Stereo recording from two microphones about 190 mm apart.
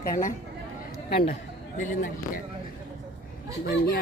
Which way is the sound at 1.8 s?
45° left (ahead or behind).